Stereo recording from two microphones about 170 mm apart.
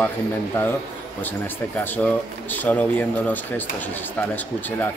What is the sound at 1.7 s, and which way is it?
Speech, 10° left (ahead or behind).